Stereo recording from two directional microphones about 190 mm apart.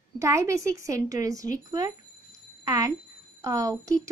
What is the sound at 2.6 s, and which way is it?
A woman's voice, 20° right (ahead or behind).